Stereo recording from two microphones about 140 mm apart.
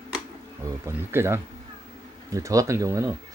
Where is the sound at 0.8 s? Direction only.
15° right (ahead or behind).